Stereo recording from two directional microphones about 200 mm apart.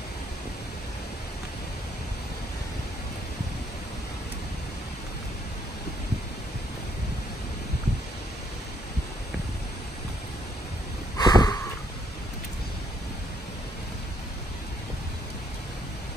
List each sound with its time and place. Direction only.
11.1 s sniff: 20° left (ahead or behind)